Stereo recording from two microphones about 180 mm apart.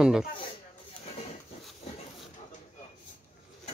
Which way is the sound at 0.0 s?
5° right (ahead or behind).